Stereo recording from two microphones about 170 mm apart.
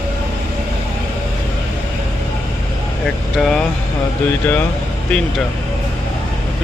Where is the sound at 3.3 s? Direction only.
5° left (ahead or behind).